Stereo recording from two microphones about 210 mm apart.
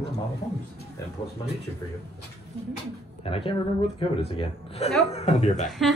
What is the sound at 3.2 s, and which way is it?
A man's voice, 25° left (ahead or behind).